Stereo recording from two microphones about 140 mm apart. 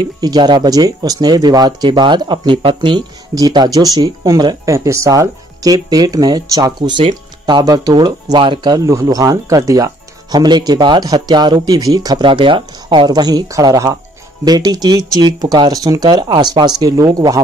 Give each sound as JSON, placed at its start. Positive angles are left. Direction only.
{"t": 0.2, "sound": "speech", "side_deg": -30}